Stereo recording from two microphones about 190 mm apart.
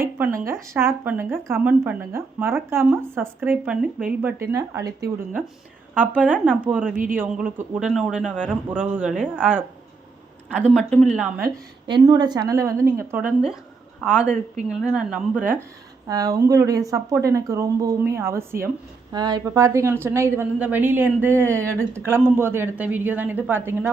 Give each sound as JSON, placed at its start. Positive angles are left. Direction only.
{"t": 0.2, "sound": "a woman's voice", "side_deg": -15}
{"t": 5.9, "sound": "a woman's voice", "side_deg": -10}
{"t": 6.9, "sound": "speech", "side_deg": -45}
{"t": 7.2, "sound": "a man's voice", "side_deg": -5}
{"t": 10.9, "sound": "a man's voice", "side_deg": 0}
{"t": 11.9, "sound": "a woman's voice", "side_deg": -25}
{"t": 16.0, "sound": "a woman's voice", "side_deg": -20}